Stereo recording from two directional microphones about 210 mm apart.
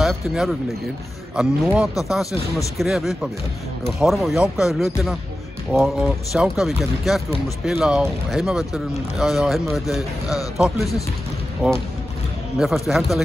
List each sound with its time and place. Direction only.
0.0 s speech: centre (ahead or behind)